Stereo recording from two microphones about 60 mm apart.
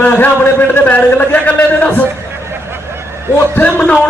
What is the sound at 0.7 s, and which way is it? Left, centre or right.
A man's voice, left.